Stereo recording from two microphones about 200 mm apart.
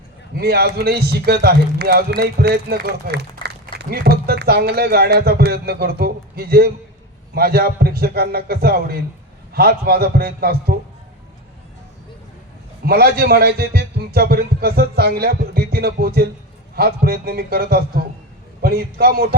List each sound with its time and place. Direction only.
0.3 s a man's voice: 50° right (ahead or behind)
12.8 s a man's voice: 50° right (ahead or behind)